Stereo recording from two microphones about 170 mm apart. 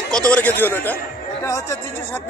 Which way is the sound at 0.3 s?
10° left (ahead or behind).